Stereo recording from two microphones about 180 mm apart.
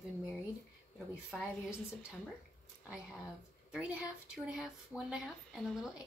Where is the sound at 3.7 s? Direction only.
5° right (ahead or behind).